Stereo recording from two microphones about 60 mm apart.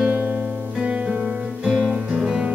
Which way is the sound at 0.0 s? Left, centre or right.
Right.